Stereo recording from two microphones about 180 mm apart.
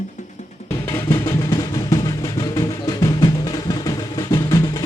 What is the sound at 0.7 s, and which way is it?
Music, 15° left (ahead or behind).